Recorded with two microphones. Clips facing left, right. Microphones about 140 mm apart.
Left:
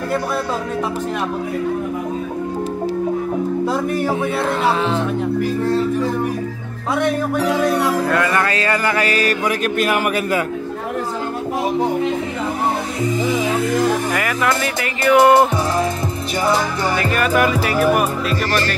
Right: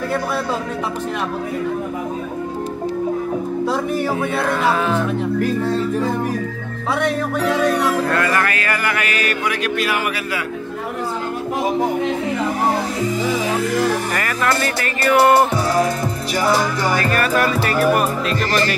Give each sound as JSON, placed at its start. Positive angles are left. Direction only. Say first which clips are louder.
{"t": 7.0, "sound": "speech", "louder": "left 2 dB", "side_deg": 10}
{"t": 8.5, "sound": "speech", "louder": "left 3 dB", "side_deg": 25}
{"t": 13.7, "sound": "speech", "louder": "left 2 dB", "side_deg": 15}
{"t": 17.0, "sound": "speech", "louder": "left 4 dB", "side_deg": 15}